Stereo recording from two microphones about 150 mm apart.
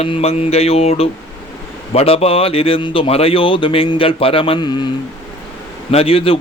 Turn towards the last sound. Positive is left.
turn(degrees=40)  # may be behind; listen again after turning